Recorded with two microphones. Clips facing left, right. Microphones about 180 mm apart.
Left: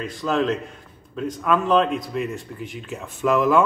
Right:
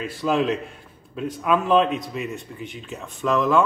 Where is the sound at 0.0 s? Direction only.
5° right (ahead or behind).